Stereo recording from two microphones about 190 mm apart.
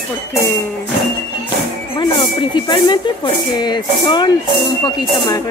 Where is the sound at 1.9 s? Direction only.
25° left (ahead or behind).